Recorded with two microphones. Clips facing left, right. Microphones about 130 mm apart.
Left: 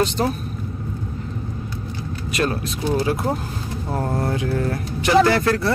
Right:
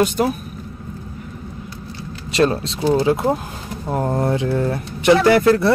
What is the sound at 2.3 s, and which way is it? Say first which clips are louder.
Speech: right 6 dB; 30° right (ahead or behind).